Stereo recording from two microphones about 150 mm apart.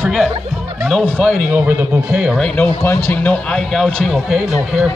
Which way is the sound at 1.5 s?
10° right (ahead or behind).